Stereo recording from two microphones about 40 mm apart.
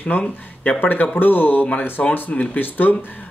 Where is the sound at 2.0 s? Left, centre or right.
Left.